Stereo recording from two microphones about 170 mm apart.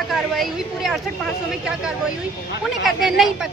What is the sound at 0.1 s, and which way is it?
Speech, centre (ahead or behind).